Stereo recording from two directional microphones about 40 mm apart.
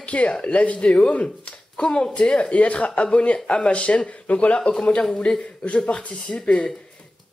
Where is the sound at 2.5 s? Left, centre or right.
Left.